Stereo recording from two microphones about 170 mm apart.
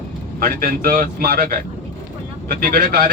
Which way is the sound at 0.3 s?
60° right (ahead or behind).